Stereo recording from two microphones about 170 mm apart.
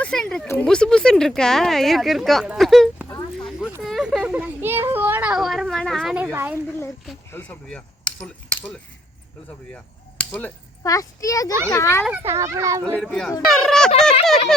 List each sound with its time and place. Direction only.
0.0 s speech: 5° left (ahead or behind)
3.8 s a sound: centre (ahead or behind)
6.3 s a child's voice: 10° right (ahead or behind)
7.3 s speech: 10° left (ahead or behind)
9.7 s chop: 10° left (ahead or behind)
10.8 s a child's voice: 20° left (ahead or behind)
12.0 s a child's voice: 10° right (ahead or behind)
12.8 s speech: 5° left (ahead or behind)